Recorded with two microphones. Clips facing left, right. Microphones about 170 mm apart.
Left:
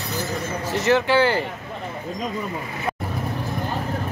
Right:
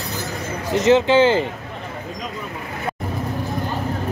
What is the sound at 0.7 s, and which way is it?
Speech, 20° right (ahead or behind).